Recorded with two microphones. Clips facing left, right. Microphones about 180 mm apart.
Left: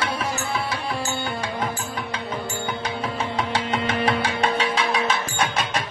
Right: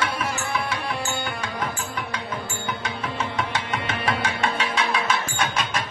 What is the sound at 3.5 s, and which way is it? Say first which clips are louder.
Music: left 4 dB; 35° left (ahead or behind).